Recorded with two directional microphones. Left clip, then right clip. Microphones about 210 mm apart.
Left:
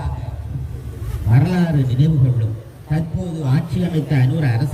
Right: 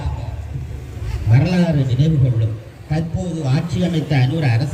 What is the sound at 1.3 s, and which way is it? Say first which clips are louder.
Speech: right 1 dB; 50° left (ahead or behind).